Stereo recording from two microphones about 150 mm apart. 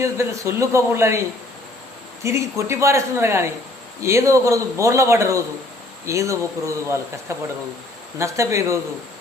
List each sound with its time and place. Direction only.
0.0 s a man's voice: 20° right (ahead or behind)
2.2 s a man's voice: 20° right (ahead or behind)